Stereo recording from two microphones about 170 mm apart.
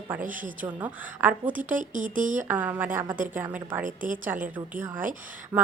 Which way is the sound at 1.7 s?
50° right (ahead or behind).